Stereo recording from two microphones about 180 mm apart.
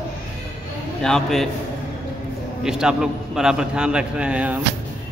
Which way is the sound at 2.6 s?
5° right (ahead or behind).